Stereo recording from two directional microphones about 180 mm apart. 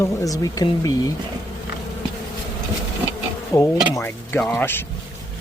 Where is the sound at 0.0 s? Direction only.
20° left (ahead or behind).